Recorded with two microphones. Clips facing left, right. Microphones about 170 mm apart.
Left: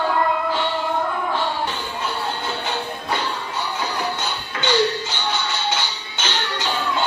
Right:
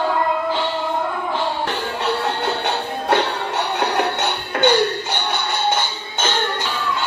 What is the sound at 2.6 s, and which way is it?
Music, 70° right (ahead or behind).